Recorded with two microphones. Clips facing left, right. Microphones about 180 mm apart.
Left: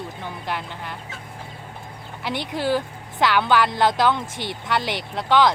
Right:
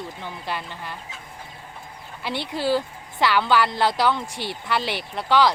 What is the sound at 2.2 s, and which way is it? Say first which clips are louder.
A woman's voice: left 1 dB; 15° left (ahead or behind).